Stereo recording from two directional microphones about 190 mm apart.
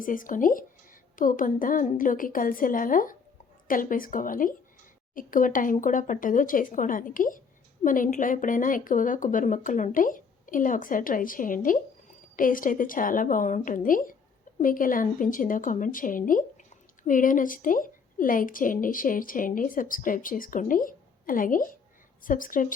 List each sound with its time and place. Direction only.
0.0 s a woman's voice: 45° left (ahead or behind)